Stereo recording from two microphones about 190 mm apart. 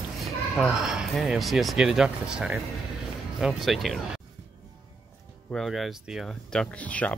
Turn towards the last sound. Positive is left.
turn(degrees=5)  # may be behind; listen again after turning